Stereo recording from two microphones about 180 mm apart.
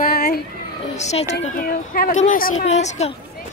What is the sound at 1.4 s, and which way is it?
Speech, 50° left (ahead or behind).